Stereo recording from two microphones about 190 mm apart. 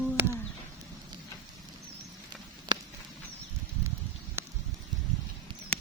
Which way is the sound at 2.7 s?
25° right (ahead or behind).